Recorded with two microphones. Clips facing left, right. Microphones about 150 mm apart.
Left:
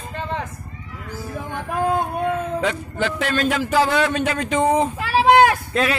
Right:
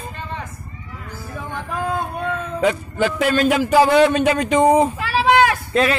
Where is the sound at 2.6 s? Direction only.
10° right (ahead or behind).